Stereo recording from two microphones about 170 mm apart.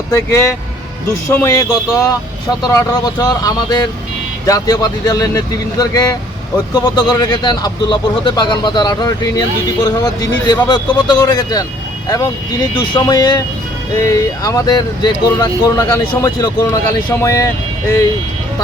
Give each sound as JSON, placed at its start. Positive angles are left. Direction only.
{"t": 0.1, "sound": "speech", "side_deg": 15}